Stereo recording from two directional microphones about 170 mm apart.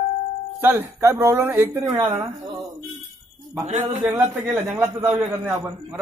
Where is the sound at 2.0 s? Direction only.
30° right (ahead or behind).